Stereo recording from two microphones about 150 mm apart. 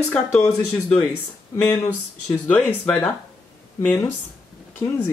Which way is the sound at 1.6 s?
20° left (ahead or behind).